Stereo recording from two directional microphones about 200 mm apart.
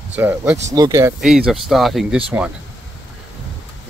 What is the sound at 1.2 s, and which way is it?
Speech, centre (ahead or behind).